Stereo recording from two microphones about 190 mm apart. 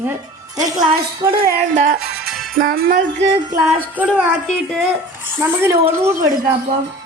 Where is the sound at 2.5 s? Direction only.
50° right (ahead or behind).